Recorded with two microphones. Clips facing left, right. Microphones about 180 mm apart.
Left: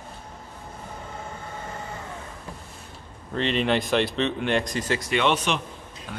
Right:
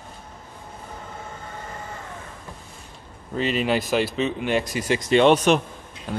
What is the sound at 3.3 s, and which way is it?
Speech, 5° right (ahead or behind).